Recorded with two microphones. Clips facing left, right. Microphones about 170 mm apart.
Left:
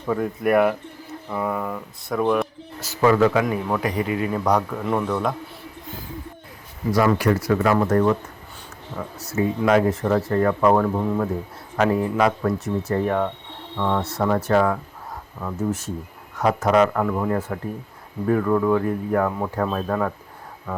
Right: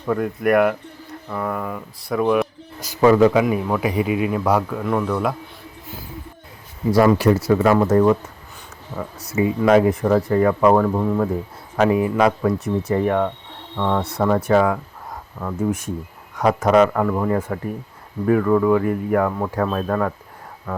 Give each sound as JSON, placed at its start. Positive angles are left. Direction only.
{"t": 0.1, "sound": "speech", "side_deg": 0}
{"t": 7.2, "sound": "speech", "side_deg": -25}
{"t": 10.2, "sound": "speech", "side_deg": 0}